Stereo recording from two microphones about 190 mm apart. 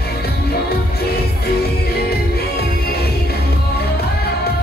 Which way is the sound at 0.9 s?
55° left (ahead or behind).